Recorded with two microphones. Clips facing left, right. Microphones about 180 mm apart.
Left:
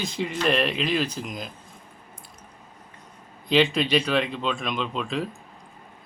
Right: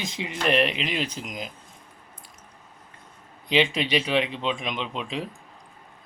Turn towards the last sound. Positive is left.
turn(degrees=-15)  # may be behind; listen again after turning